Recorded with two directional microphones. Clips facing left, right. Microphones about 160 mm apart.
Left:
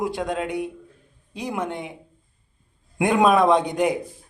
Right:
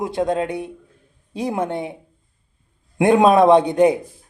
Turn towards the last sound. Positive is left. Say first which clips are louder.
# right 5 dB
turn(degrees=-25)  # may be behind; listen again after turning